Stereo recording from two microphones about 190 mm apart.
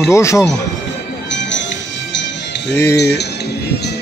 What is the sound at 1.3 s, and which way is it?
Music, 70° left (ahead or behind).